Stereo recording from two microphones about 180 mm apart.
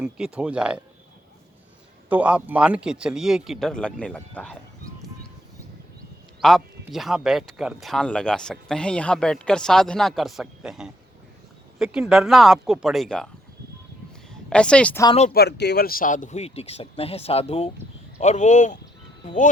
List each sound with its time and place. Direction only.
0.0 s speech: 5° right (ahead or behind)
2.0 s speech: 10° right (ahead or behind); by 4.5 s 5° left (ahead or behind)
6.4 s speech: centre (ahead or behind)
14.5 s a woman's voice: 5° left (ahead or behind)
15.3 s speech: 65° left (ahead or behind); by 19.4 s 45° left (ahead or behind)